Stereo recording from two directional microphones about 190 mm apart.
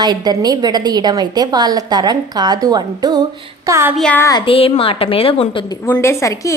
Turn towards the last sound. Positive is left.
turn(degrees=15)  # may be behind; listen again after turning